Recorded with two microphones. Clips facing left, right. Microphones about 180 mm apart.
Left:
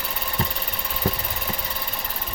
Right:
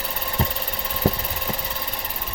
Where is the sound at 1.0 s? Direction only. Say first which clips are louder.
Right 4 dB; 35° right (ahead or behind).